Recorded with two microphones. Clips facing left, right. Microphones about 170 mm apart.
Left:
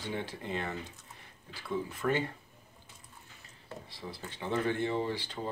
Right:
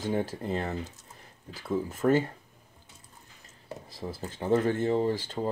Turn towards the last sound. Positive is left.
turn(degrees=-45)  # may be behind; listen again after turning